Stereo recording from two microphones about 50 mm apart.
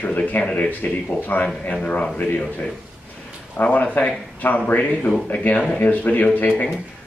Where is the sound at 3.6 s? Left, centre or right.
Left.